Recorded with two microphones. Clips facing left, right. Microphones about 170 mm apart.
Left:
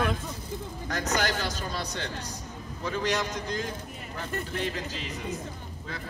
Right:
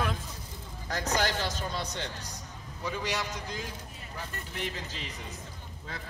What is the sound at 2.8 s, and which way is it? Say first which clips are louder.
Speech: left 4 dB; 10° right (ahead or behind).